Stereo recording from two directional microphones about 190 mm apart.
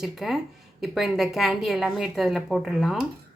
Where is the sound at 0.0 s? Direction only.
Centre (ahead or behind).